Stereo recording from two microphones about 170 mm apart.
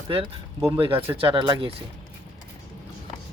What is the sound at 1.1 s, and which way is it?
Speech, 30° right (ahead or behind).